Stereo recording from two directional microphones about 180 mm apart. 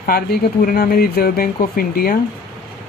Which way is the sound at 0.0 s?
55° left (ahead or behind).